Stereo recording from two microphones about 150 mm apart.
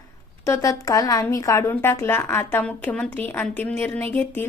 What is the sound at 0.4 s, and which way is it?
A woman's voice, 20° left (ahead or behind).